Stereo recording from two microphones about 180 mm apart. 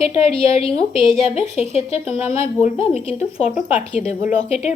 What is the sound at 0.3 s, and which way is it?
Speech, 30° left (ahead or behind).